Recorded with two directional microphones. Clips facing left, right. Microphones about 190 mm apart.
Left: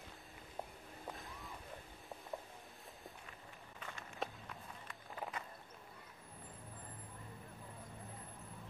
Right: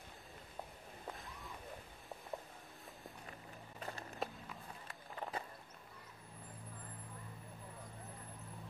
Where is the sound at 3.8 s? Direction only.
35° right (ahead or behind).